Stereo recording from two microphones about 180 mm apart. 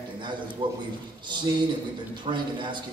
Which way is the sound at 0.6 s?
25° right (ahead or behind).